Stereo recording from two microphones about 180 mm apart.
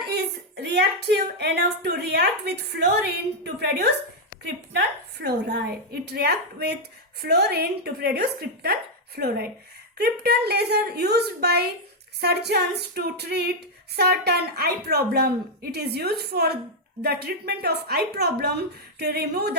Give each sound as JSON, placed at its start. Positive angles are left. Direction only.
{"t": 0.5, "sound": "a woman's voice", "side_deg": -65}
{"t": 5.2, "sound": "female singing", "side_deg": -65}